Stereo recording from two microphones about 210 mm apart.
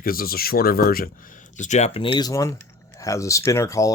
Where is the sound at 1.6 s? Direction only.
35° left (ahead or behind).